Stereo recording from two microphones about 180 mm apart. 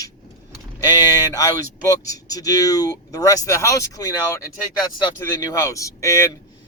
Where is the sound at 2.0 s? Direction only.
20° left (ahead or behind).